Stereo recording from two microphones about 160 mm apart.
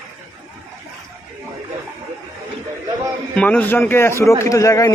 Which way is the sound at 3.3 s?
5° left (ahead or behind).